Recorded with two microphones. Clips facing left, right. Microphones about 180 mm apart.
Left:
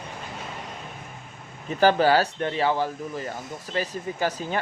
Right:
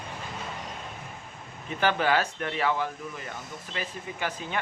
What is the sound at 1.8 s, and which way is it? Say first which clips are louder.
Speech: left 6 dB; 35° left (ahead or behind).